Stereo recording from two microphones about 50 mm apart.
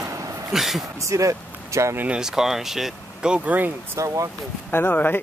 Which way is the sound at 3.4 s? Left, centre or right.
Right.